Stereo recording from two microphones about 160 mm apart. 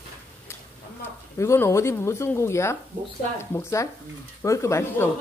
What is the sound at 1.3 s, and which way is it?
A woman's voice, 15° left (ahead or behind).